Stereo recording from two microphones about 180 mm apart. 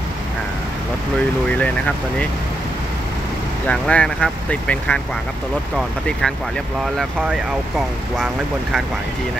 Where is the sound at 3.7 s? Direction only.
5° left (ahead or behind).